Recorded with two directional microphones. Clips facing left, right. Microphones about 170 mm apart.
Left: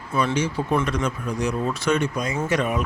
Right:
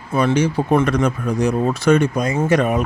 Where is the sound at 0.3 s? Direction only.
65° right (ahead or behind).